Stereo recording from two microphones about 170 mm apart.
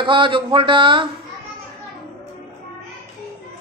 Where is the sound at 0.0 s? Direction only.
30° right (ahead or behind).